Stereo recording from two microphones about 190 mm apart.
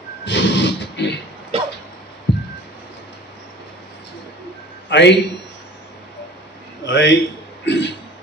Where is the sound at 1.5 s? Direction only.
30° right (ahead or behind).